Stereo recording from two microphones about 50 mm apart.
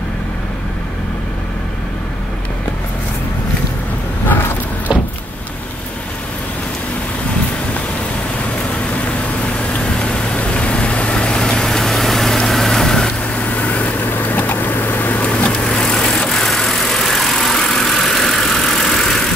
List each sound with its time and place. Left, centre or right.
9.8 s vehicle: left
13.3 s vehicle: left
16.4 s vehicle: centre